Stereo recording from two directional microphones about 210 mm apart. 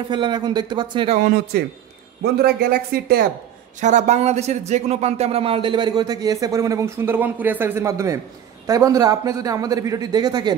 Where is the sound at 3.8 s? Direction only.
35° right (ahead or behind).